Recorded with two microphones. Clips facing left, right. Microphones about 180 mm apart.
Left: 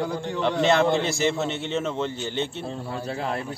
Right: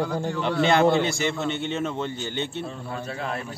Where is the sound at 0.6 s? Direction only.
Centre (ahead or behind).